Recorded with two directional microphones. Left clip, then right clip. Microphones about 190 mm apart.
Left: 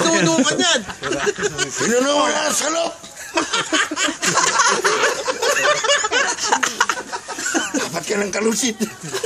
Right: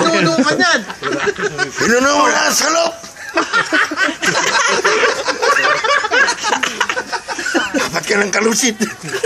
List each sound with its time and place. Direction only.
0.0 s a sound: 50° left (ahead or behind)
0.5 s speech: 55° left (ahead or behind)
1.9 s speech: 5° left (ahead or behind)
3.3 s speech: 60° left (ahead or behind)
4.4 s speech: 40° left (ahead or behind)
5.4 s snicker: 60° left (ahead or behind)
6.5 s a sound: 45° left (ahead or behind)
7.8 s speech: 15° right (ahead or behind)